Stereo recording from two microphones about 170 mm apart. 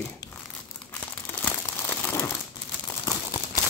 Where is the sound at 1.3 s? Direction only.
10° left (ahead or behind).